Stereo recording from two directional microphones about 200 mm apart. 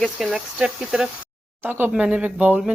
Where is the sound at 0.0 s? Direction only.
Centre (ahead or behind).